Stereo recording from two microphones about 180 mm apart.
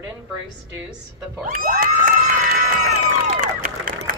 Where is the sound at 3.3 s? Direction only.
45° right (ahead or behind).